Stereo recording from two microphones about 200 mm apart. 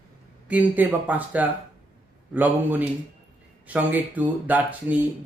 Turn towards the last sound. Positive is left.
turn(degrees=-10)  # may be behind; listen again after turning